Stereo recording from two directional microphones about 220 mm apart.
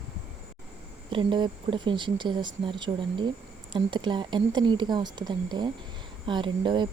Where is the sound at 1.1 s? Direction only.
20° right (ahead or behind).